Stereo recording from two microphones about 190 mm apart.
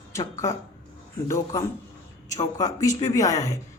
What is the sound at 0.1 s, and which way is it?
Speech, 15° left (ahead or behind).